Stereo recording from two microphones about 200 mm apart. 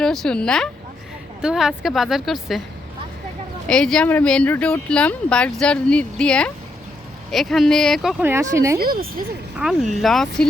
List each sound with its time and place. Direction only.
0.0 s speech: centre (ahead or behind)
3.7 s speech: 5° left (ahead or behind)
8.2 s speech: 15° right (ahead or behind)
8.8 s speech: 45° right (ahead or behind)
9.6 s speech: centre (ahead or behind)